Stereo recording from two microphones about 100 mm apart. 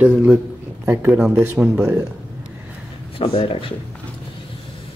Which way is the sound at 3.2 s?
65° left (ahead or behind).